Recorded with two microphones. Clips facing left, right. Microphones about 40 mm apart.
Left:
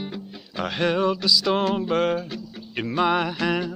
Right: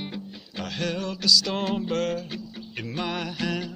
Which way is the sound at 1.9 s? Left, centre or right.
Centre.